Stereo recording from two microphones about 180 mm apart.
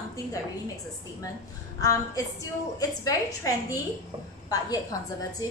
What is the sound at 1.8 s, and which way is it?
A woman's voice, 20° left (ahead or behind).